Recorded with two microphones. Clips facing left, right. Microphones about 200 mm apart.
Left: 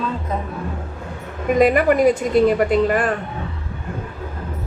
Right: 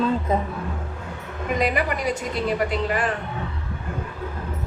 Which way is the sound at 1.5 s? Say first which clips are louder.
Left 9 dB; 50° left (ahead or behind).